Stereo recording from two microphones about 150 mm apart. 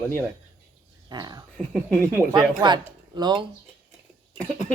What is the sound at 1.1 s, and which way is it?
Speech, 30° right (ahead or behind).